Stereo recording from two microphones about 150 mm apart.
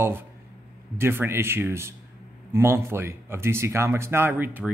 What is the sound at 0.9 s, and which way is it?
Speech, 15° right (ahead or behind).